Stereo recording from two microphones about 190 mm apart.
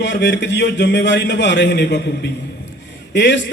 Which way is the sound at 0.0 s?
65° left (ahead or behind).